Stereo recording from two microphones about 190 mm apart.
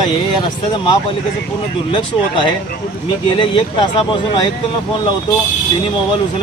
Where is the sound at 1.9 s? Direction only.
25° left (ahead or behind).